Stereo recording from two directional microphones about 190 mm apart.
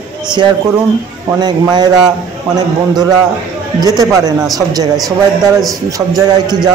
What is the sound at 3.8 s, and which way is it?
Speech, 20° right (ahead or behind).